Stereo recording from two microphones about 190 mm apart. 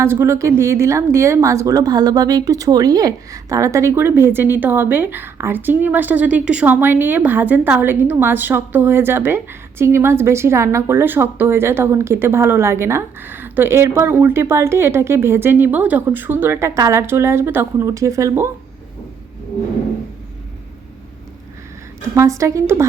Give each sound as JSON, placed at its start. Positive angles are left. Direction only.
{"t": 0.0, "sound": "speech", "side_deg": -15}
{"t": 22.1, "sound": "speech", "side_deg": -15}